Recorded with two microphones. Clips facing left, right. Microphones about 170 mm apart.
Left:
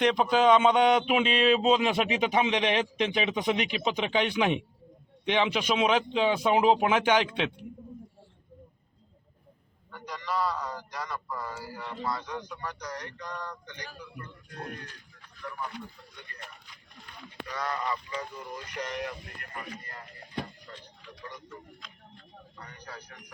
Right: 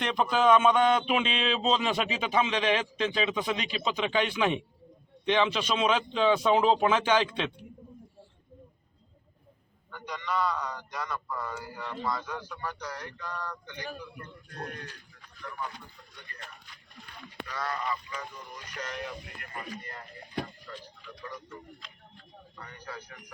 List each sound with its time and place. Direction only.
0.0 s a man's voice: 15° left (ahead or behind)
9.9 s a man's voice: centre (ahead or behind)
17.5 s speech: 20° left (ahead or behind)
18.8 s a man's voice: 15° left (ahead or behind)